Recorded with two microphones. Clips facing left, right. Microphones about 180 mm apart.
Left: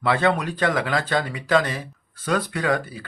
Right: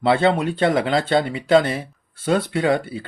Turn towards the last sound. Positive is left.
turn(degrees=-25)  # may be behind; listen again after turning